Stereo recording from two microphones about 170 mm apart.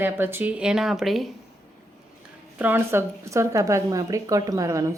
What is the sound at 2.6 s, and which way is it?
Speech, 10° right (ahead or behind).